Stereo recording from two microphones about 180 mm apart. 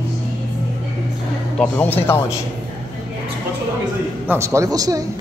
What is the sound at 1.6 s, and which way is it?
Speech, 10° left (ahead or behind).